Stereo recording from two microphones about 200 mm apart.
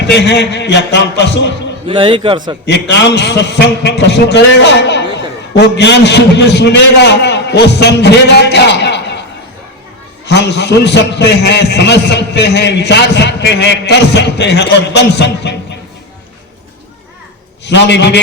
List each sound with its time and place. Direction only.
0.1 s a man's voice: 55° left (ahead or behind)
1.9 s a man's voice: 25° right (ahead or behind)
2.6 s a man's voice: 60° left (ahead or behind)
10.2 s a man's voice: 55° left (ahead or behind)
17.7 s a man's voice: 60° left (ahead or behind)